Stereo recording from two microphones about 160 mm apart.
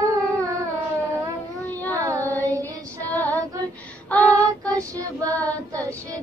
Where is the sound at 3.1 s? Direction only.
10° left (ahead or behind).